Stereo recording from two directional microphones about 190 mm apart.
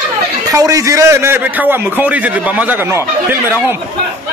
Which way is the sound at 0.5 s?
15° right (ahead or behind).